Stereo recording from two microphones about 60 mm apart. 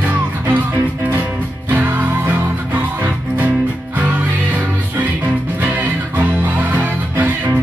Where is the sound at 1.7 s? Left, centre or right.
Right.